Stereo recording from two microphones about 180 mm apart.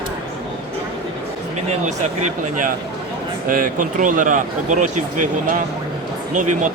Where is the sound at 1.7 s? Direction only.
40° right (ahead or behind).